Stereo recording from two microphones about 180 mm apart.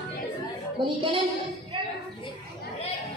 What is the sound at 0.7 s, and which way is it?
Speech, 25° right (ahead or behind).